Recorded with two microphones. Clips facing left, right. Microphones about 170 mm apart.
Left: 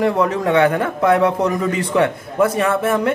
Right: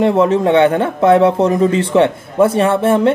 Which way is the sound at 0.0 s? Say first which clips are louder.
Right 5 dB; 25° right (ahead or behind).